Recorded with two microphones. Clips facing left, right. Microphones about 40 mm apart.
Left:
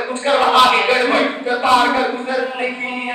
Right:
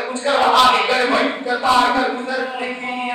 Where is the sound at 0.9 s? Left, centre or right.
Left.